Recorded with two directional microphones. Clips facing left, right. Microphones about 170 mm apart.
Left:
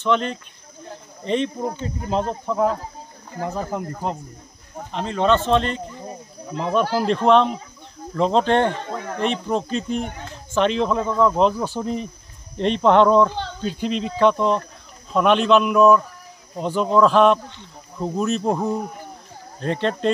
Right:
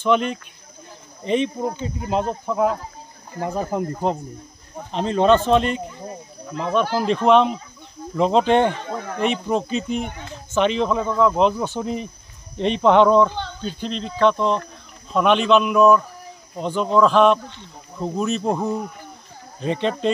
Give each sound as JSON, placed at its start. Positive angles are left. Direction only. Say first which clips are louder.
{"t": 0.0, "sound": "speech", "louder": "right 2 dB", "side_deg": -10}
{"t": 3.3, "sound": "speech", "louder": "right 2 dB", "side_deg": -15}
{"t": 6.6, "sound": "speech", "louder": "even", "side_deg": 5}